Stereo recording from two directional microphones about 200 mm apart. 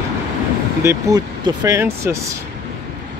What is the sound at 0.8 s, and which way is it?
Speech, 20° right (ahead or behind).